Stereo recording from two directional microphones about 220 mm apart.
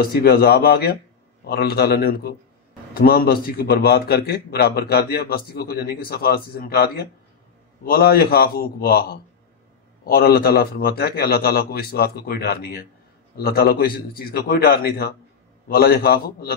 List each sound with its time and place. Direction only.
0.0 s a man's voice: 45° left (ahead or behind)